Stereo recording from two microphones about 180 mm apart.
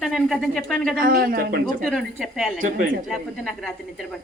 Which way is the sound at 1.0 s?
55° right (ahead or behind).